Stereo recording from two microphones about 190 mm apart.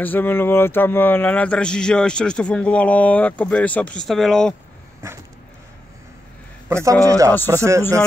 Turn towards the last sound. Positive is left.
turn(degrees=-15)  # may be behind; listen again after turning